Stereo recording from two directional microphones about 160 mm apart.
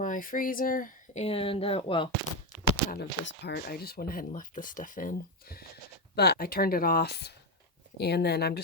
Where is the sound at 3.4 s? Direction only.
85° left; by 5.6 s 65° left (ahead or behind).